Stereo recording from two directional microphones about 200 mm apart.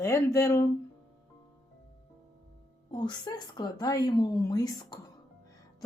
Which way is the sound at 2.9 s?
20° left (ahead or behind).